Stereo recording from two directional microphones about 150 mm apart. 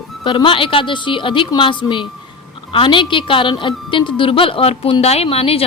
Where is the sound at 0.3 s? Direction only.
35° left (ahead or behind).